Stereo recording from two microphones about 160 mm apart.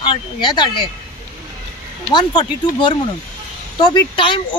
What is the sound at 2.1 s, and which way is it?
Speech, 30° left (ahead or behind).